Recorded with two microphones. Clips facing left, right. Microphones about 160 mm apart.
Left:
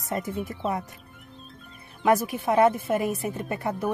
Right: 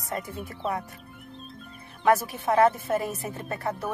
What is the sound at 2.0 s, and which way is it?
A woman's voice, 15° left (ahead or behind).